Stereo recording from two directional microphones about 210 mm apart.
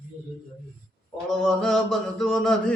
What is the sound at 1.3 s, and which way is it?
Speech, centre (ahead or behind).